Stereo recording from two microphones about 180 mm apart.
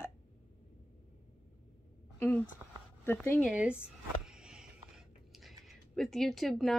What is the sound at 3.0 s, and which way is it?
Speech, 10° left (ahead or behind).